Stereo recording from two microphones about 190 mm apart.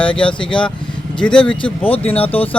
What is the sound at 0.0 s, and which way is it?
Speech, 5° left (ahead or behind).